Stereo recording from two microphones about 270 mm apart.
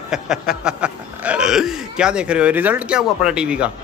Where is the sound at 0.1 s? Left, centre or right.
Centre.